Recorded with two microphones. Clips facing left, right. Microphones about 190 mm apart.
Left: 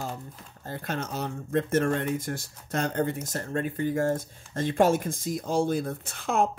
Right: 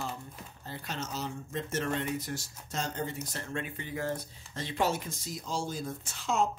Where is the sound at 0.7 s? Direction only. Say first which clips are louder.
Left 6 dB; 55° left (ahead or behind).